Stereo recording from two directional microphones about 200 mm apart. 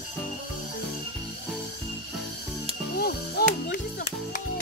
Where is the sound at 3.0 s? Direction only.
50° left (ahead or behind).